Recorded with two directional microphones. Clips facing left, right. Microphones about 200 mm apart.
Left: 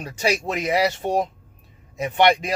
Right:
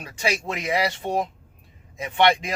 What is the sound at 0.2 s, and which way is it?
Speech, 35° left (ahead or behind).